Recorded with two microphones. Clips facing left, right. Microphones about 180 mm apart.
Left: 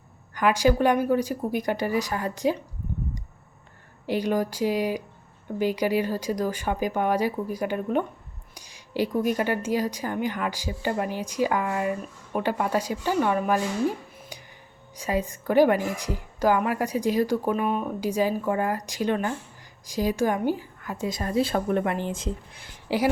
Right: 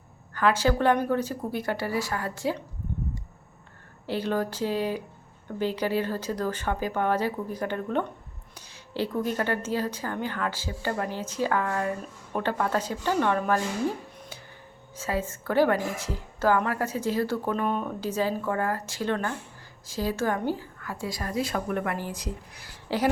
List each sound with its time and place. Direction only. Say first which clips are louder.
0.3 s speech: left 2 dB; 15° left (ahead or behind)
4.0 s speech: left 3 dB; 15° left (ahead or behind)
14.2 s a sound: left 1 dB; 15° left (ahead or behind)
14.9 s a woman's voice: left 3 dB; 15° left (ahead or behind)